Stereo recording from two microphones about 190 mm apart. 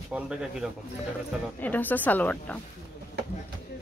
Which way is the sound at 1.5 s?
10° left (ahead or behind).